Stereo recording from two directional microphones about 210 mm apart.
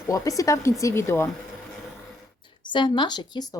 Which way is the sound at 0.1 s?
15° left (ahead or behind).